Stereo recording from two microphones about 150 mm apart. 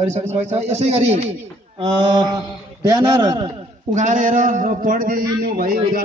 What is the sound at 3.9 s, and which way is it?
A man's voice, 55° right (ahead or behind).